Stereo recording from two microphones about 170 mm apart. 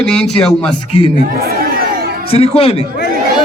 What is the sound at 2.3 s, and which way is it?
Speech, 35° left (ahead or behind).